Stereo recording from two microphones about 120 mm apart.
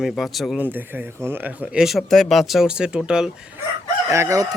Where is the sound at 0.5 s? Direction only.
15° right (ahead or behind).